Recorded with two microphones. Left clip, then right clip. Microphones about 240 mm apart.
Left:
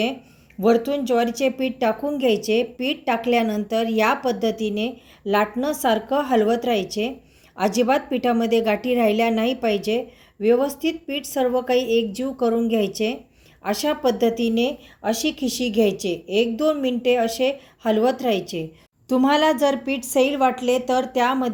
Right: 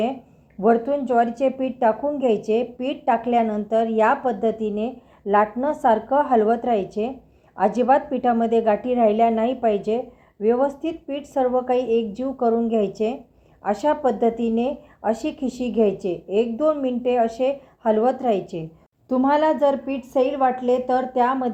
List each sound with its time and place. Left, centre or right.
0.6 s a woman's voice: left